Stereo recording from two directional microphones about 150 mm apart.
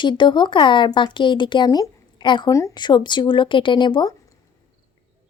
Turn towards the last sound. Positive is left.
turn(degrees=30)  # may be behind; listen again after turning